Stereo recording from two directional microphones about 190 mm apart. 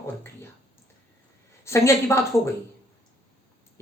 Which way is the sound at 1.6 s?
15° left (ahead or behind).